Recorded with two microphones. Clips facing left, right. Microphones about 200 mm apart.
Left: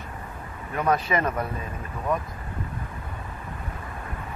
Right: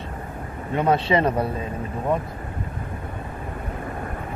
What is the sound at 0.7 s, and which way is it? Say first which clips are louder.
Speech: right 4 dB; 30° right (ahead or behind).